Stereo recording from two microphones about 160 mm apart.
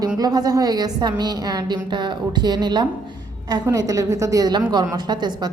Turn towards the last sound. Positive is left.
turn(degrees=-25)  # may be behind; listen again after turning